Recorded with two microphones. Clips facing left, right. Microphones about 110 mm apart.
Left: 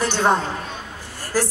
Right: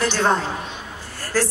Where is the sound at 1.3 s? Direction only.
15° left (ahead or behind).